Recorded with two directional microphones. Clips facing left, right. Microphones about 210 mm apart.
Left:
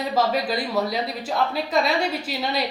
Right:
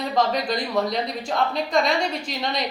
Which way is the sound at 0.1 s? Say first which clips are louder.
Even; 5° left (ahead or behind).